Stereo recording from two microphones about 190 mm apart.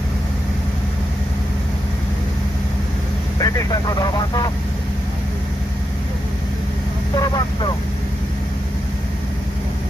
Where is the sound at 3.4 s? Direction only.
20° left (ahead or behind).